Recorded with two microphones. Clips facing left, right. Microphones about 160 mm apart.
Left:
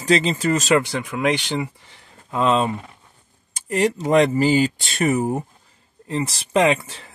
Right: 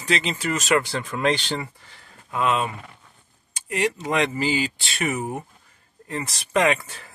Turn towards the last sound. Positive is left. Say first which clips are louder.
# left 3 dB
turn(degrees=25)  # may be behind; listen again after turning